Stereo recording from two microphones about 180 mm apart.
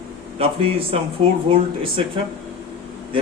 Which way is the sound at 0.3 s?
30° right (ahead or behind).